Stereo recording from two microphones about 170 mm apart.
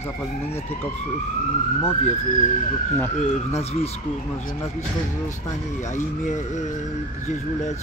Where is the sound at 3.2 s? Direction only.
40° left (ahead or behind).